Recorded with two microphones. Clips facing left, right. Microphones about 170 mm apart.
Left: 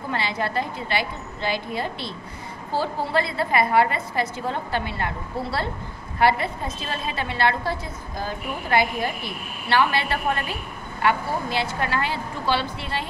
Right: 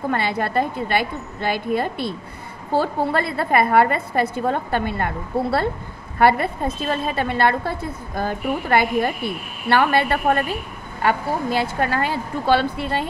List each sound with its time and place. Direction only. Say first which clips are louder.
0.1 s a woman's voice: right 2 dB; 55° right (ahead or behind)